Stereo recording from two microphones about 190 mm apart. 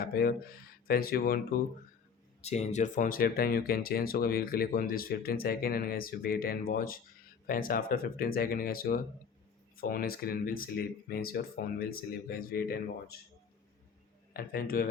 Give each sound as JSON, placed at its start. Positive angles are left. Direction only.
{"t": 0.0, "sound": "speech", "side_deg": 50}
{"t": 2.4, "sound": "speech", "side_deg": 35}
{"t": 14.3, "sound": "speech", "side_deg": 50}